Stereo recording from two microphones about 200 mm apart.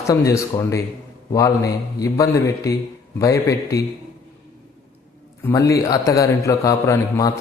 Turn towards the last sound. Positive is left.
turn(degrees=15)  # may be behind; listen again after turning